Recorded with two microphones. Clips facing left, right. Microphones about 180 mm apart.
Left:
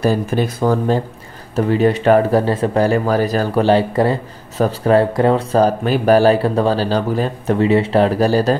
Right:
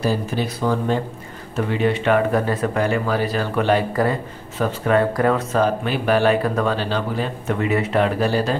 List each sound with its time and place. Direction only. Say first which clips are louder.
0.0 s speech: left 5 dB; 50° left (ahead or behind)